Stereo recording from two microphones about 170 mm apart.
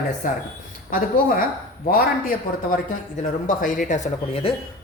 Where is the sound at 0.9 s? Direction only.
55° left (ahead or behind).